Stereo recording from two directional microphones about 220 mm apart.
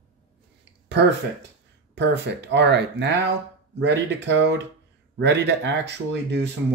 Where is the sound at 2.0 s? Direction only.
50° right (ahead or behind).